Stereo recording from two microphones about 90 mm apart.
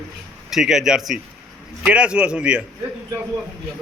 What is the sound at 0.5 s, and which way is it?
A man's voice, 5° right (ahead or behind).